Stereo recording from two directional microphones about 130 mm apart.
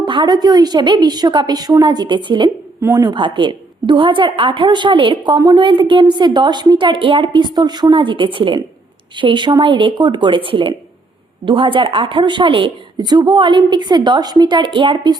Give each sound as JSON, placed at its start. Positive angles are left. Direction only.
{"t": 0.0, "sound": "a woman's voice", "side_deg": -35}